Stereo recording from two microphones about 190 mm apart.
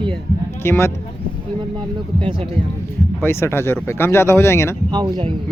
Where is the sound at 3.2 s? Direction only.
15° left (ahead or behind).